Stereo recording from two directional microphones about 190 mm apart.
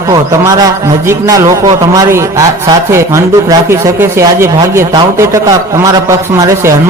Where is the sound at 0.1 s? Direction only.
15° right (ahead or behind).